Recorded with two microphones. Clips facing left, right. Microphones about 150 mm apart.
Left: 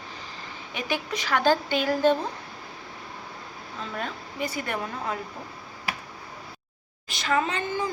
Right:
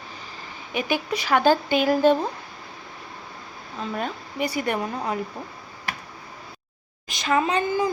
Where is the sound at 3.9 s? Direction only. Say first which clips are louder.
Right 3 dB; 15° right (ahead or behind).